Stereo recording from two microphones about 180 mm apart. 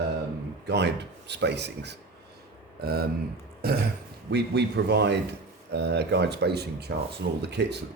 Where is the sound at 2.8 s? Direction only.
60° right (ahead or behind).